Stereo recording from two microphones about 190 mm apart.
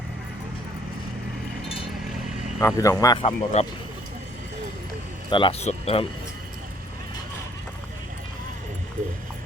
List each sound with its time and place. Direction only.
2.6 s speech: 15° left (ahead or behind); by 3.7 s 30° left (ahead or behind)
5.3 s speech: 30° left (ahead or behind)